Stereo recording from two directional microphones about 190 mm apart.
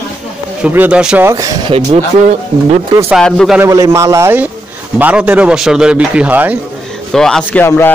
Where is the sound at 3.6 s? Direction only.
15° right (ahead or behind).